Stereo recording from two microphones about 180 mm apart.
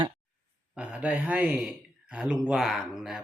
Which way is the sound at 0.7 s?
5° right (ahead or behind).